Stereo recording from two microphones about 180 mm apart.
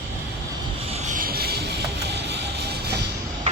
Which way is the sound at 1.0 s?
50° right (ahead or behind).